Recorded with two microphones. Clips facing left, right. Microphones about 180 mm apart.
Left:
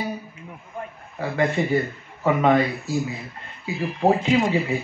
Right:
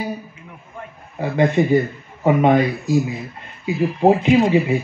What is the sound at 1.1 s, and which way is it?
A man's voice, 20° right (ahead or behind).